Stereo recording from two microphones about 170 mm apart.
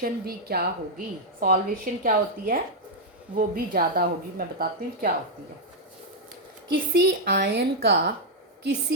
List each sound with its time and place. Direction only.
0.0 s a woman's voice: 65° right (ahead or behind)
6.7 s a woman's voice: 75° right (ahead or behind)